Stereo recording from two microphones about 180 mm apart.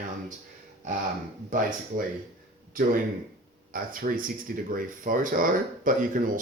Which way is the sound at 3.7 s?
50° right (ahead or behind).